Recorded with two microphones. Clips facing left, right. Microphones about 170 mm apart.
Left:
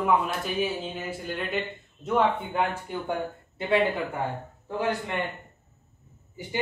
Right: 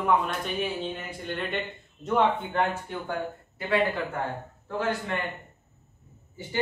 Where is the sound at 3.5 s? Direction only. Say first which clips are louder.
Left 2 dB; 25° left (ahead or behind).